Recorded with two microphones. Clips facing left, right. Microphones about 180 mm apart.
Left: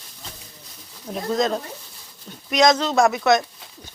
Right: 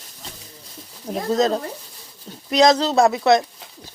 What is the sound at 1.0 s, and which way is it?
Speech, 35° right (ahead or behind).